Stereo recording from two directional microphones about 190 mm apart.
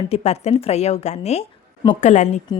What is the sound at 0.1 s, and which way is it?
A woman's voice, 35° left (ahead or behind).